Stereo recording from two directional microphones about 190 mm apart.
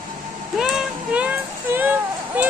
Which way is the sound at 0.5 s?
5° right (ahead or behind).